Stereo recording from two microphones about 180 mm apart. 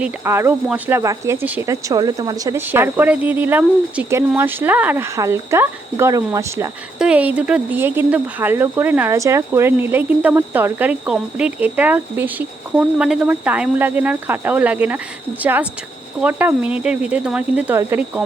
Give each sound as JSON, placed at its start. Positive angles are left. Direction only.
{"t": 0.0, "sound": "speech", "side_deg": -15}
{"t": 7.0, "sound": "speech", "side_deg": -5}
{"t": 16.2, "sound": "speech", "side_deg": -10}